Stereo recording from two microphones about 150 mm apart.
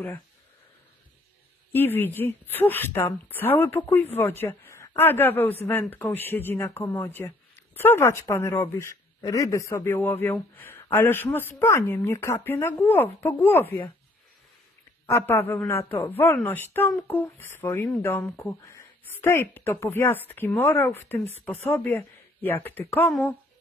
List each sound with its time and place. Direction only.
1.7 s speech: 15° left (ahead or behind)
15.0 s a man's voice: 15° left (ahead or behind)